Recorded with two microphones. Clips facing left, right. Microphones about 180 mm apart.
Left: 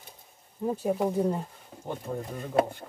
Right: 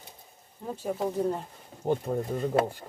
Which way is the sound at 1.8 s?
35° right (ahead or behind).